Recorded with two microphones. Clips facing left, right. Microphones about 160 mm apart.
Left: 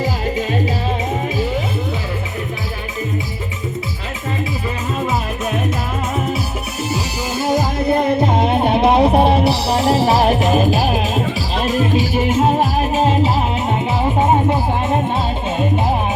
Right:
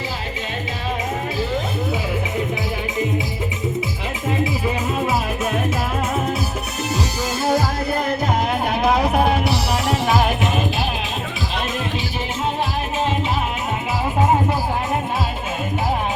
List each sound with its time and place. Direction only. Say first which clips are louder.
6.9 s music: even; 10° left (ahead or behind); by 13.3 s 40° left (ahead or behind)